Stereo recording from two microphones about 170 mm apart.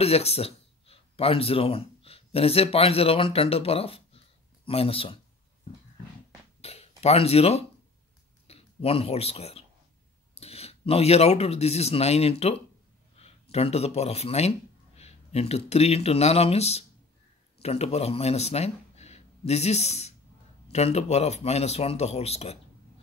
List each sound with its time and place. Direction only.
0.0 s speech: 35° left (ahead or behind)
6.6 s a sound: 35° left (ahead or behind)
8.5 s speech: 35° left (ahead or behind)